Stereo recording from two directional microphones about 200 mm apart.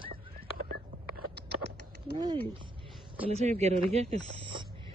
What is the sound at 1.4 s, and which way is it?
Typing, 55° right (ahead or behind).